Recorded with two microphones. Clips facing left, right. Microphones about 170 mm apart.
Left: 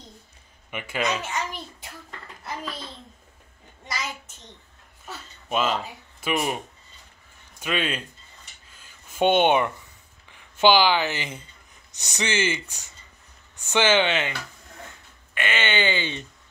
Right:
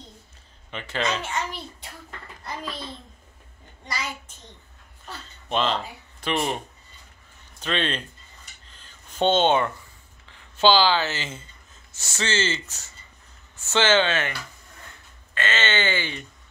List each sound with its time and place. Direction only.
0.7 s speech: 10° left (ahead or behind)
5.0 s speech: 5° left (ahead or behind)
7.6 s speech: 10° left (ahead or behind)
8.6 s a sound: 10° left (ahead or behind)
10.2 s speech: 15° left (ahead or behind)
15.3 s speech: 15° left (ahead or behind)